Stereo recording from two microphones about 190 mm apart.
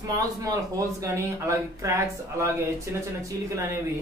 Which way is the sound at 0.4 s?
15° right (ahead or behind).